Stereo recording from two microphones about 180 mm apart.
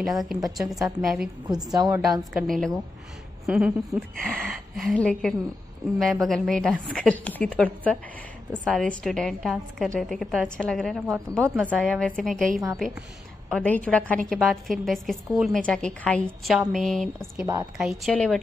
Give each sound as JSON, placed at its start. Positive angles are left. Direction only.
{"t": 0.0, "sound": "a woman's voice", "side_deg": 0}
{"t": 1.5, "sound": "a woman's voice", "side_deg": -20}
{"t": 2.3, "sound": "a woman's voice", "side_deg": 0}
{"t": 13.5, "sound": "a woman's voice", "side_deg": 5}